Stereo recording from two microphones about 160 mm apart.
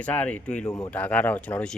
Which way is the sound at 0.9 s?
10° left (ahead or behind).